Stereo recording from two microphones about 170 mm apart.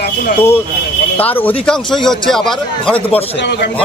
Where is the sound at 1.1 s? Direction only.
10° left (ahead or behind).